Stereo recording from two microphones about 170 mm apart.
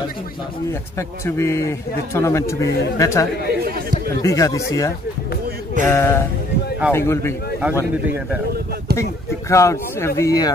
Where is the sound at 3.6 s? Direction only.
65° right (ahead or behind).